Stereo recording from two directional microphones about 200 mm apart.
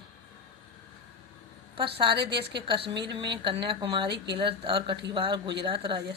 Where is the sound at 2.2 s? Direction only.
60° right (ahead or behind).